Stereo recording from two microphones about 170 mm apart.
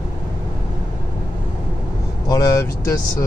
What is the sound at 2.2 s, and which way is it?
Speech, 20° left (ahead or behind).